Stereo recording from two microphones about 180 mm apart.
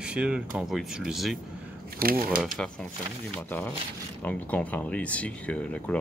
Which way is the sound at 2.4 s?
Centre (ahead or behind).